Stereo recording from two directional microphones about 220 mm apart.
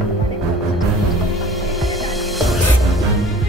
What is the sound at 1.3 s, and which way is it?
Music, centre (ahead or behind).